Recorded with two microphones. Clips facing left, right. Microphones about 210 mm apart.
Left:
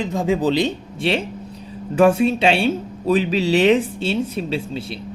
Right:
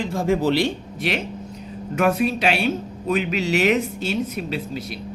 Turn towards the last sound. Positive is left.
turn(degrees=30)  # may be behind; listen again after turning